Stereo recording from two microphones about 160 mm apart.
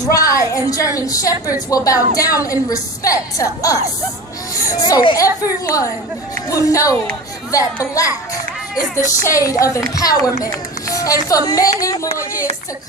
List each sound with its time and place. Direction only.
0.0 s a woman's voice: 20° left (ahead or behind)
6.5 s a child's voice: 20° left (ahead or behind)